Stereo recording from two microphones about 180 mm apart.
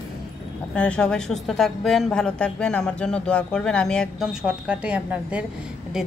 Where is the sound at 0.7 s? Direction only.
5° left (ahead or behind).